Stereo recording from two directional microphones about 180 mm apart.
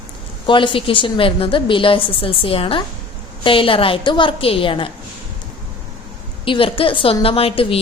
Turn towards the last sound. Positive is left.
turn(degrees=35)  # may be behind; listen again after turning